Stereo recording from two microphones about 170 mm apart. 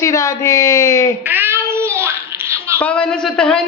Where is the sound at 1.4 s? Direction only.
15° right (ahead or behind).